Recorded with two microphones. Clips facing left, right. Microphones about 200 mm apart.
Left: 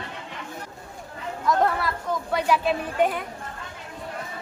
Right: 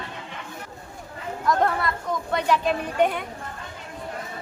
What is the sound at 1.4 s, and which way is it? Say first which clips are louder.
A woman's voice: even; centre (ahead or behind).